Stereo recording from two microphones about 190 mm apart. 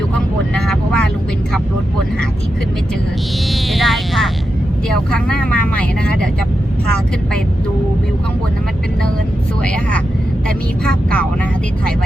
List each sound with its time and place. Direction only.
0.5 s speech: 5° left (ahead or behind)
3.5 s a sound: centre (ahead or behind)
5.1 s speech: 5° left (ahead or behind)
10.8 s speech: 5° left (ahead or behind)